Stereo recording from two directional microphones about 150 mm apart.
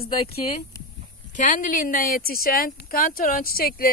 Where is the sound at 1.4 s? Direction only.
60° left (ahead or behind).